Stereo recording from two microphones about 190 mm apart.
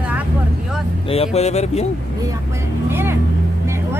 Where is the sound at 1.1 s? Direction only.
30° left (ahead or behind).